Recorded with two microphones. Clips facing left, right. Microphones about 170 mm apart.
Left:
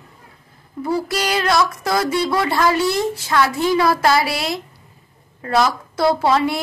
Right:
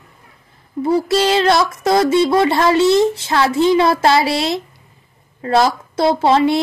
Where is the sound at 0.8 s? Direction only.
25° right (ahead or behind).